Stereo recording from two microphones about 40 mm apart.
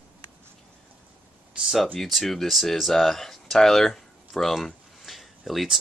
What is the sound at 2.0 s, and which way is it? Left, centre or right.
Speech, centre.